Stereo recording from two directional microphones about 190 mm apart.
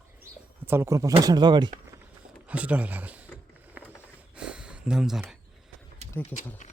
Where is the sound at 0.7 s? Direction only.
15° right (ahead or behind).